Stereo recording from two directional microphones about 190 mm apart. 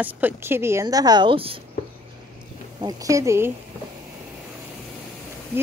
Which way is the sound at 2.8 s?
20° right (ahead or behind).